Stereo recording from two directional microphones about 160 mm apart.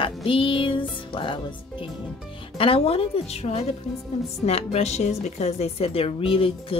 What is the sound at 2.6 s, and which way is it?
Speech, 35° left (ahead or behind).